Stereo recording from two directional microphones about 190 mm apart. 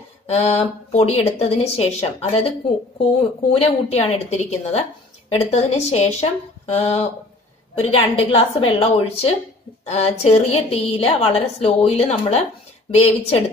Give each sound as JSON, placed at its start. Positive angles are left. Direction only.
{"t": 0.3, "sound": "a woman's voice", "side_deg": 35}
{"t": 6.6, "sound": "a sound", "side_deg": 35}
{"t": 7.7, "sound": "a woman's voice", "side_deg": 30}